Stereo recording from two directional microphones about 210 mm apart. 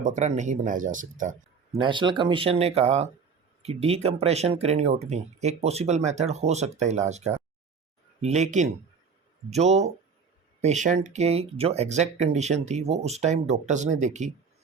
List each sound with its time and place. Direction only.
0.0 s speech: 35° right (ahead or behind)
1.7 s speech: 20° right (ahead or behind)